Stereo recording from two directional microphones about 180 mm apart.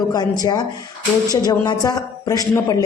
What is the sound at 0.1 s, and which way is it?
A woman's voice, 20° left (ahead or behind).